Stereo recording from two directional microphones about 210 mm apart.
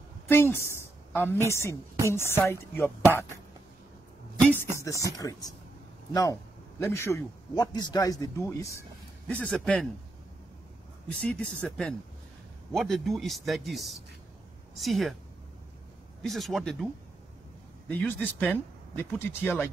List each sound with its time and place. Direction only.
0.3 s a woman's voice: 10° left (ahead or behind)
5.0 s speech: 15° left (ahead or behind)
6.8 s speech: 15° left (ahead or behind)
11.1 s speech: 5° left (ahead or behind)
16.2 s speech: centre (ahead or behind)
17.8 s speech: 10° left (ahead or behind)